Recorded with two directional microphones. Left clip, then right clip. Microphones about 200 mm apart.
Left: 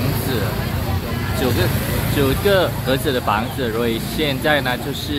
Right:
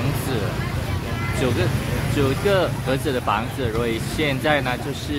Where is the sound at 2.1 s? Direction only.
Centre (ahead or behind).